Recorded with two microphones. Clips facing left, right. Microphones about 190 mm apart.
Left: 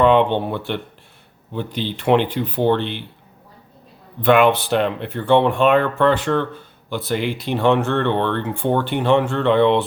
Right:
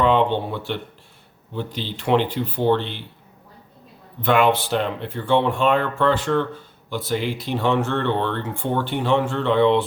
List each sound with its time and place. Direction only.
0.0 s speech: 60° left (ahead or behind)
4.2 s speech: 60° left (ahead or behind)